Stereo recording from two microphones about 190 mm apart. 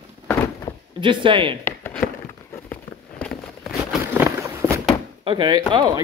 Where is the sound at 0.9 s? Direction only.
25° right (ahead or behind).